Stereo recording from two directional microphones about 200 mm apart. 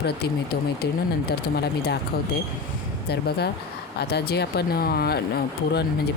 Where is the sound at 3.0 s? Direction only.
55° left (ahead or behind).